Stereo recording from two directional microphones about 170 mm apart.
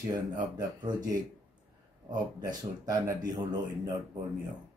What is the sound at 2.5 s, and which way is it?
Speech, 20° right (ahead or behind).